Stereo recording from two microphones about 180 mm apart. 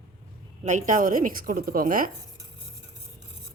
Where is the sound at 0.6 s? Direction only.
45° right (ahead or behind).